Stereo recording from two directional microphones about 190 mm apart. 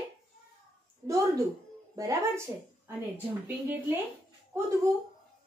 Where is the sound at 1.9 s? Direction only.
15° right (ahead or behind).